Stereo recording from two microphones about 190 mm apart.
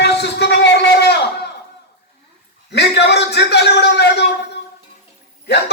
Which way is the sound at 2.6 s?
60° left (ahead or behind).